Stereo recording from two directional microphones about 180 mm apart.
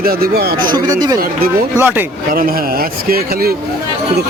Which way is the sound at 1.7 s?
10° right (ahead or behind).